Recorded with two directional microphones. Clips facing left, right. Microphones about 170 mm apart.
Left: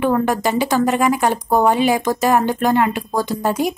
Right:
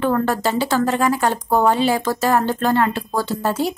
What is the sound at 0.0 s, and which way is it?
Speech, 15° left (ahead or behind).